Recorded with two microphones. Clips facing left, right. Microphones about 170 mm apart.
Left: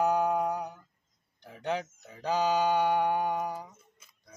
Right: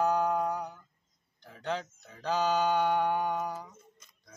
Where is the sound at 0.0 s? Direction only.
15° left (ahead or behind).